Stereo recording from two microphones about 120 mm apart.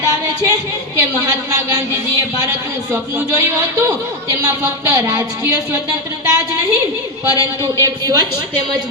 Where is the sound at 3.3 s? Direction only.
25° right (ahead or behind).